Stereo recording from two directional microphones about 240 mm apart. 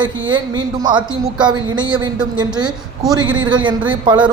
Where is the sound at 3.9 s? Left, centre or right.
Centre.